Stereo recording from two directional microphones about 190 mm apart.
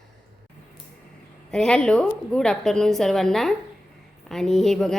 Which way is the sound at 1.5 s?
5° left (ahead or behind).